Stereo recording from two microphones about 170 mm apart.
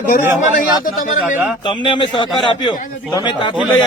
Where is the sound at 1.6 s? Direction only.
30° left (ahead or behind).